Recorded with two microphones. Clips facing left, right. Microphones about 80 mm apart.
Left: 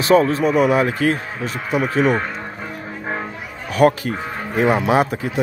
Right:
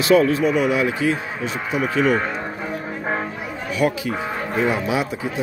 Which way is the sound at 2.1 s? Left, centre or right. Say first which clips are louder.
Right 1 dB; centre.